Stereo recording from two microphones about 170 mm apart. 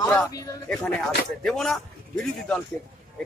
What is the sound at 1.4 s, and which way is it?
Speech, centre (ahead or behind).